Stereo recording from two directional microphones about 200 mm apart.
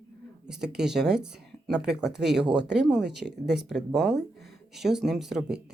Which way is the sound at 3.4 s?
Centre (ahead or behind).